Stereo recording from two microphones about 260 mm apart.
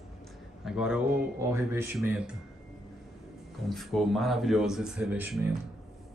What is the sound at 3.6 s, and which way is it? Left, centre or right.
Speech, centre.